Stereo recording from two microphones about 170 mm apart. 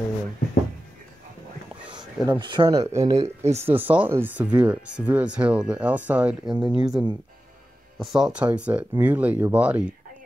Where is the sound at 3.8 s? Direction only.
10° right (ahead or behind).